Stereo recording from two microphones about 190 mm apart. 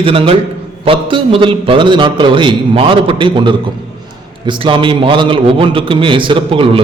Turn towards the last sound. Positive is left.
turn(degrees=-30)  # may be behind; listen again after turning